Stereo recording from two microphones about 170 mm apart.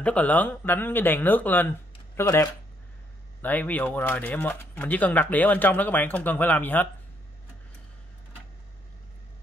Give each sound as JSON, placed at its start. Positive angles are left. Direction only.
{"t": 0.0, "sound": "speech", "side_deg": 10}